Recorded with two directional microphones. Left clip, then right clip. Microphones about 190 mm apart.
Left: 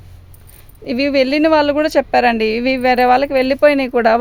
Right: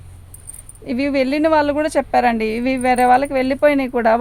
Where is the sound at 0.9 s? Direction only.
40° left (ahead or behind).